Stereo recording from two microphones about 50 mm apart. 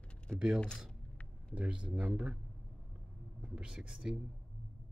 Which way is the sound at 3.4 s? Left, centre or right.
Centre.